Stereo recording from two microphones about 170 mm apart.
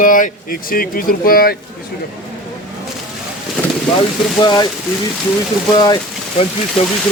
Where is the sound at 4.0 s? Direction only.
25° left (ahead or behind).